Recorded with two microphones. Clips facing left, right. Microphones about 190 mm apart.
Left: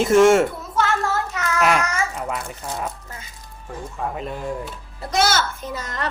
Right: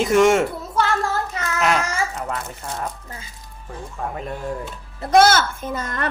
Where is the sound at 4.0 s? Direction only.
Centre (ahead or behind).